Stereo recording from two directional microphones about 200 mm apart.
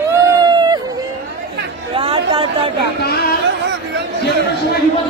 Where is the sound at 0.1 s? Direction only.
20° right (ahead or behind).